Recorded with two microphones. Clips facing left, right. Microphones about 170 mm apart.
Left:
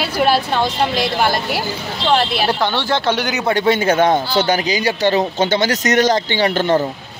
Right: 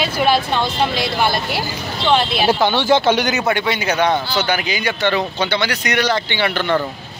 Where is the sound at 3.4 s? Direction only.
40° left (ahead or behind).